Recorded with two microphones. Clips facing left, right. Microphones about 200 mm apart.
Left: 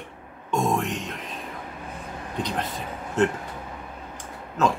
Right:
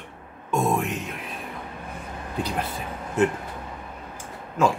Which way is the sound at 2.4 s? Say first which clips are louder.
Right 1 dB; 5° right (ahead or behind).